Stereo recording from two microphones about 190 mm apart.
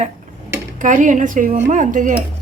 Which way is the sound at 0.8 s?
40° right (ahead or behind).